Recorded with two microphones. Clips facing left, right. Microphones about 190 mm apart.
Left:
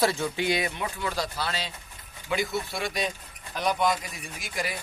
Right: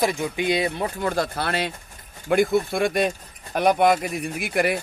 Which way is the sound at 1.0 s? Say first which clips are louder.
Right 6 dB; 50° right (ahead or behind).